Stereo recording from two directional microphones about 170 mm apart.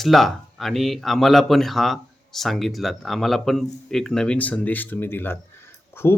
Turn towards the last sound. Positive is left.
turn(degrees=15)  # may be behind; listen again after turning